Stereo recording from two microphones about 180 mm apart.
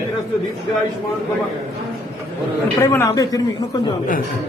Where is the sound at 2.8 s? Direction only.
15° left (ahead or behind).